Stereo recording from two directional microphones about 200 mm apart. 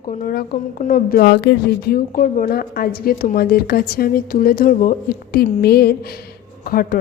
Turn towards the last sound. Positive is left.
turn(degrees=45)  # may be behind; listen again after turning